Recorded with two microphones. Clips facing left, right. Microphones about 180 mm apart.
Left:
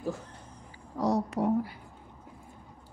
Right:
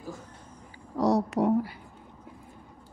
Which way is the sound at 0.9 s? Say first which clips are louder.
Right 4 dB; 80° right.